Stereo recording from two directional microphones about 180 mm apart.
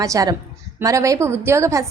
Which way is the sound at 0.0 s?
20° right (ahead or behind).